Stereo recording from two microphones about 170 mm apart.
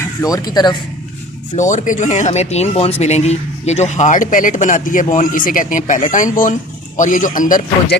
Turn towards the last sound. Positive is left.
turn(degrees=50)  # may be behind; listen again after turning